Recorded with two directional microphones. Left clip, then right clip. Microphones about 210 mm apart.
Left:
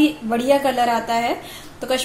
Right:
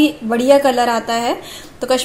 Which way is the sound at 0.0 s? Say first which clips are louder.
Right 4 dB; 25° right (ahead or behind).